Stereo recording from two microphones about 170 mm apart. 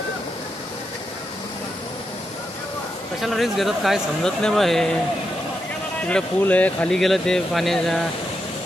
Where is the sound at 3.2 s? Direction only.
Centre (ahead or behind).